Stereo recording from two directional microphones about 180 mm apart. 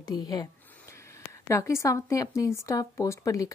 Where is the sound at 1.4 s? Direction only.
15° left (ahead or behind).